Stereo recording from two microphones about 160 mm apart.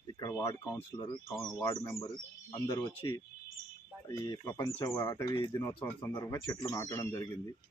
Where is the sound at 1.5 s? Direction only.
20° left (ahead or behind).